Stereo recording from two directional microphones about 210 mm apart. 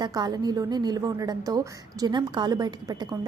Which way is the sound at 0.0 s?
20° right (ahead or behind).